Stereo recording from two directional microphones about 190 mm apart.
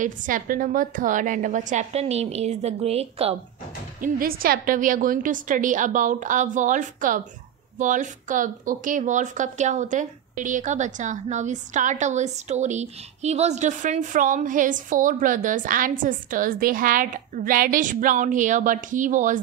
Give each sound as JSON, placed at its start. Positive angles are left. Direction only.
{"t": 0.0, "sound": "a woman's voice", "side_deg": -45}
{"t": 4.0, "sound": "speech", "side_deg": -50}